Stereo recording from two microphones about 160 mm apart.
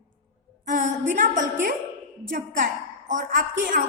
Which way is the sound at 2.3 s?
55° right (ahead or behind).